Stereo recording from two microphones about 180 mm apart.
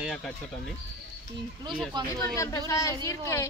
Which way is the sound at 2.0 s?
25° right (ahead or behind).